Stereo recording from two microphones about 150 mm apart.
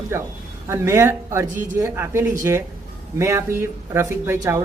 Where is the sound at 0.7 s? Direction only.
20° right (ahead or behind).